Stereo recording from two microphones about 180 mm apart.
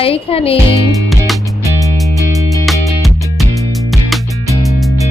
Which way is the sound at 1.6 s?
15° left (ahead or behind).